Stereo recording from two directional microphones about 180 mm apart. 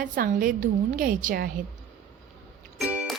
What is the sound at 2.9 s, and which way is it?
Music, 5° right (ahead or behind).